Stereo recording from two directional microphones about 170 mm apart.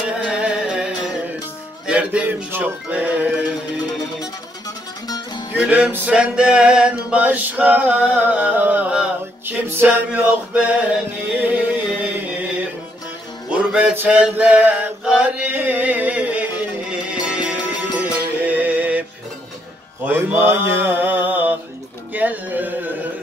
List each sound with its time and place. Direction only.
0.1 s music: 5° right (ahead or behind)
4.6 s music: 20° left (ahead or behind)
5.6 s male singing: 10° right (ahead or behind)
7.1 s music: 10° right (ahead or behind)
13.5 s mantra: 5° right (ahead or behind)
20.1 s mantra: 10° right (ahead or behind)
22.1 s music: 10° right (ahead or behind)